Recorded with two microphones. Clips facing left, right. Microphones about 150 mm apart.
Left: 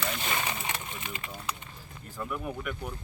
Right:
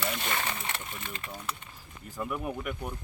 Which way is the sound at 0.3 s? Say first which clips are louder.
Left 1 dB; 10° left (ahead or behind).